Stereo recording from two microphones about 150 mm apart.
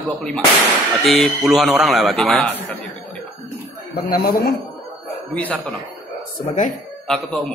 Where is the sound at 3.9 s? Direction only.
85° left.